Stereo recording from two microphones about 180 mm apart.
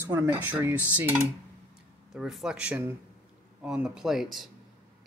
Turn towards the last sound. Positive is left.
turn(degrees=0)  # may be behind; listen again after turning